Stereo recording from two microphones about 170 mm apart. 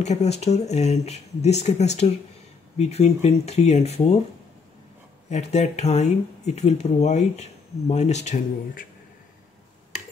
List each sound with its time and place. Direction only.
0.0 s speech: 40° left (ahead or behind)
5.3 s speech: 40° left (ahead or behind)